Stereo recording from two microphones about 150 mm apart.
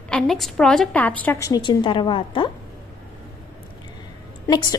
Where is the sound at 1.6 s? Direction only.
30° left (ahead or behind).